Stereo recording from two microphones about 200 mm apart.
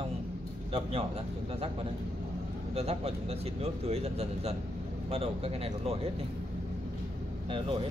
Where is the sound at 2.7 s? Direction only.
30° right (ahead or behind).